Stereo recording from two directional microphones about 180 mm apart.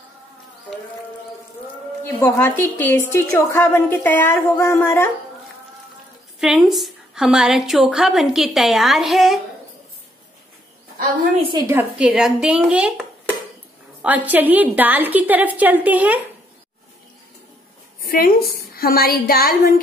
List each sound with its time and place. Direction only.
2.2 s a woman's voice: 10° left (ahead or behind)
6.4 s a woman's voice: centre (ahead or behind)
11.6 s a woman's voice: 10° right (ahead or behind)
14.0 s a woman's voice: 10° right (ahead or behind)
18.0 s a woman's voice: 55° left (ahead or behind)